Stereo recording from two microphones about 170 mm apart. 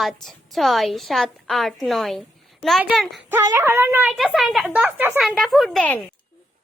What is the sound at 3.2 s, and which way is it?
Speech, 15° right (ahead or behind).